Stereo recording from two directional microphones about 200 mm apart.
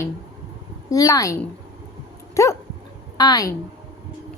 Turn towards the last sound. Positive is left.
turn(degrees=20)  # may be behind; listen again after turning